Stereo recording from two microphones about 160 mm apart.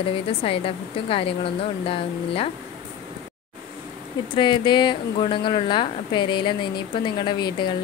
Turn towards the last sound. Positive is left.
turn(degrees=30)  # may be behind; listen again after turning